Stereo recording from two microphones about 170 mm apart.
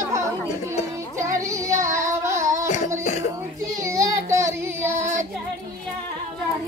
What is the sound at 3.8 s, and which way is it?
Child singing, 20° right (ahead or behind).